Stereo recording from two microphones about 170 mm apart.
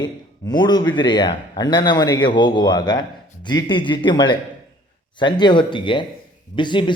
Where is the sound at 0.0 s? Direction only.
25° left (ahead or behind).